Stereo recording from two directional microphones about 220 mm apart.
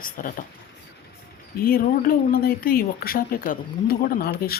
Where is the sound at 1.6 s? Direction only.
40° left (ahead or behind).